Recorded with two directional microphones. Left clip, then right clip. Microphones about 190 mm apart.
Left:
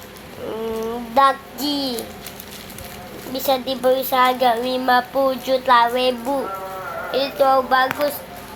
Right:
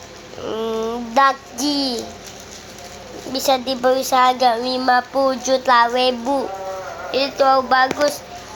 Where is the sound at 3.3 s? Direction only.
25° right (ahead or behind).